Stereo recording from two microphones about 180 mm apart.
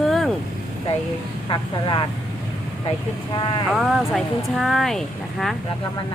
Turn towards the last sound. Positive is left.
turn(degrees=0)  # may be behind; listen again after turning